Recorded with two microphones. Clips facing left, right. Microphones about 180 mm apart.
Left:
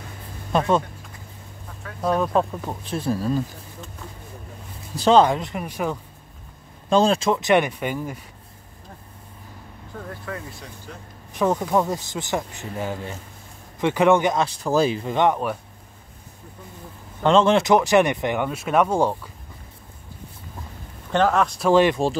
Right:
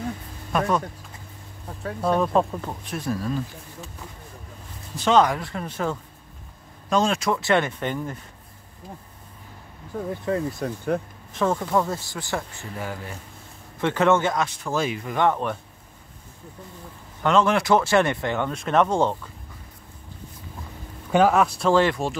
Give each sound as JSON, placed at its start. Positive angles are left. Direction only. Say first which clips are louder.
{"t": 0.5, "sound": "speech", "louder": "left 3 dB", "side_deg": 25}
{"t": 2.0, "sound": "speech", "louder": "even", "side_deg": 0}
{"t": 2.8, "sound": "speech", "louder": "left 5 dB", "side_deg": 30}
{"t": 4.9, "sound": "speech", "louder": "left 3 dB", "side_deg": 35}
{"t": 6.9, "sound": "speech", "louder": "left 4 dB", "side_deg": 30}
{"t": 9.9, "sound": "speech", "louder": "right 7 dB", "side_deg": -10}
{"t": 10.6, "sound": "speech", "louder": "right 13 dB", "side_deg": -50}
{"t": 11.3, "sound": "speech", "louder": "left 2 dB", "side_deg": 15}
{"t": 14.4, "sound": "speech", "louder": "left 5 dB", "side_deg": 35}
{"t": 17.2, "sound": "speech", "louder": "left 3 dB", "side_deg": 25}
{"t": 21.1, "sound": "speech", "louder": "right 1 dB", "side_deg": -5}
{"t": 21.6, "sound": "speech", "louder": "left 5 dB", "side_deg": 15}